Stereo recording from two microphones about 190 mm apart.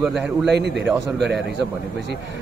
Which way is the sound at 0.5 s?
65° right (ahead or behind).